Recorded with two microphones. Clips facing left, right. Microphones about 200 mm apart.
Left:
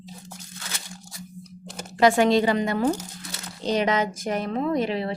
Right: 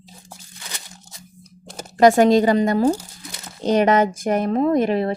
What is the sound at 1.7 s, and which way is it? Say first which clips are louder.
A woman's voice: right 5 dB; 40° right (ahead or behind).